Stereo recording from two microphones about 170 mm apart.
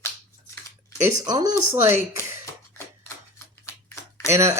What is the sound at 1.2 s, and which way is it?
Speech, 25° right (ahead or behind).